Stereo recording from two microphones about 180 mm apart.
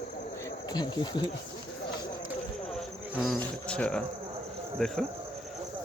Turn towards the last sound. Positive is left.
turn(degrees=0)  # may be behind; listen again after turning